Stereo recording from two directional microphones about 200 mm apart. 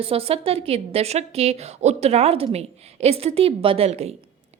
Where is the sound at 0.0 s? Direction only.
30° right (ahead or behind).